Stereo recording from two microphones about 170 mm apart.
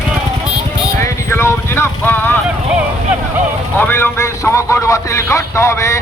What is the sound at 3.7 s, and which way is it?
A man's voice, 10° left (ahead or behind).